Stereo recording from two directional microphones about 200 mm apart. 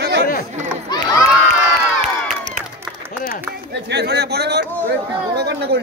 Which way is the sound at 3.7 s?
60° right (ahead or behind).